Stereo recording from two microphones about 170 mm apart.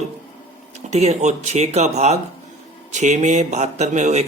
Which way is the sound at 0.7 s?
40° right (ahead or behind).